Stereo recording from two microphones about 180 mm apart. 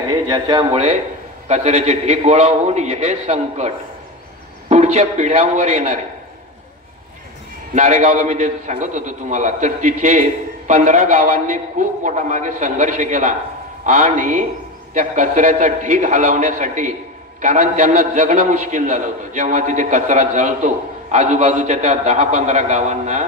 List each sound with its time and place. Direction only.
0.1 s a man's voice: 25° right (ahead or behind)
0.7 s a man's voice: 35° right (ahead or behind)
7.7 s a man's voice: 40° right (ahead or behind)